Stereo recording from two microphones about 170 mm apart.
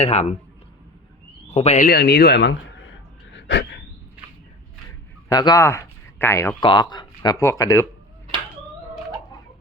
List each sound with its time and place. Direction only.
0.0 s speech: 40° left (ahead or behind)
1.5 s speech: 40° left (ahead or behind)
1.9 s speech: 70° left (ahead or behind); by 2.9 s 90° left
3.3 s a sound: 90° left
5.3 s a man's voice: 25° left (ahead or behind)
6.6 s speech: 30° left (ahead or behind)